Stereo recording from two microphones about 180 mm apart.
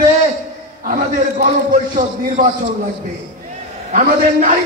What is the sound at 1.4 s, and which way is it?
A man's voice, 45° right (ahead or behind).